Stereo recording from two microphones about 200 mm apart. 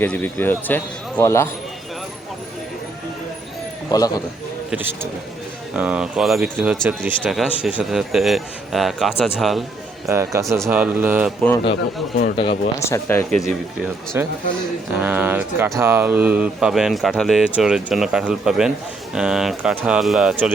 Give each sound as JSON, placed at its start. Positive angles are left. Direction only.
{"t": 0.0, "sound": "speech", "side_deg": 10}
{"t": 3.9, "sound": "a man's voice", "side_deg": 20}
{"t": 4.7, "sound": "speech", "side_deg": -10}
{"t": 10.1, "sound": "speech", "side_deg": -15}
{"t": 11.3, "sound": "speech", "side_deg": 5}
{"t": 11.6, "sound": "speech", "side_deg": 60}
{"t": 12.8, "sound": "speech", "side_deg": 15}
{"t": 14.2, "sound": "speech", "side_deg": -10}